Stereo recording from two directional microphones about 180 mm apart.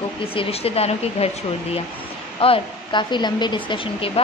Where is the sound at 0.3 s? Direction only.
30° left (ahead or behind).